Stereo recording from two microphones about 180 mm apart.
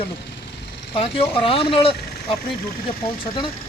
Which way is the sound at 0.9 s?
30° left (ahead or behind).